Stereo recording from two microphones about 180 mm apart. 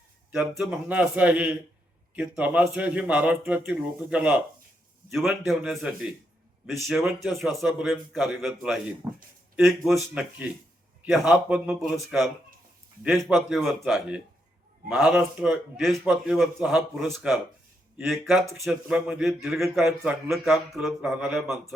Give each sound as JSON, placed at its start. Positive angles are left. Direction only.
{"t": 0.3, "sound": "a man's voice", "side_deg": -5}
{"t": 9.0, "sound": "a man's voice", "side_deg": -15}
{"t": 9.6, "sound": "speech", "side_deg": 0}
{"t": 13.0, "sound": "speech", "side_deg": 0}